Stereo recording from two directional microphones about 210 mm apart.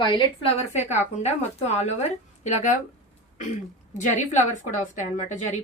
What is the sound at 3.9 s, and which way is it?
A woman's voice, 35° left (ahead or behind).